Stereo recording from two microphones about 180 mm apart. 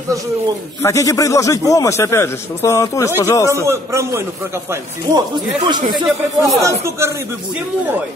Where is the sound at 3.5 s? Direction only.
15° right (ahead or behind).